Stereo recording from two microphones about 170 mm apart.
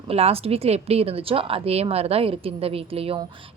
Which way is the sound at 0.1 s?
35° right (ahead or behind).